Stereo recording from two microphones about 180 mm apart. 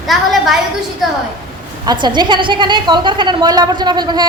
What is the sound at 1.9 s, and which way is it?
A woman's voice, 25° right (ahead or behind).